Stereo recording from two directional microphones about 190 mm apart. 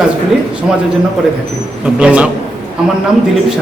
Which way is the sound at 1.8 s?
5° right (ahead or behind).